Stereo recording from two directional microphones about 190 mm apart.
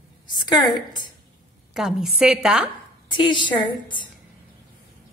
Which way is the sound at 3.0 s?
25° left (ahead or behind).